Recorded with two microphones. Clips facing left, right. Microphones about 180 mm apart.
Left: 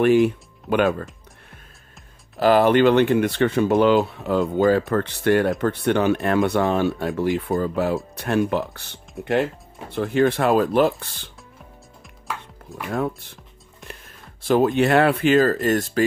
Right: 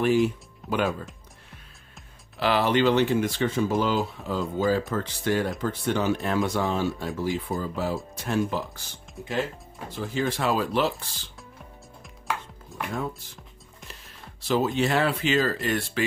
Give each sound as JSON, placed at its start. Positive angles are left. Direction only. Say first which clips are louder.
{"t": 0.0, "sound": "speech", "louder": "left 6 dB", "side_deg": 60}
{"t": 2.3, "sound": "speech", "louder": "left 7 dB", "side_deg": 45}
{"t": 12.3, "sound": "chopping", "louder": "right 1 dB", "side_deg": 0}
{"t": 12.9, "sound": "speech", "louder": "left 8 dB", "side_deg": 60}
{"t": 14.4, "sound": "speech", "louder": "left 6 dB", "side_deg": 55}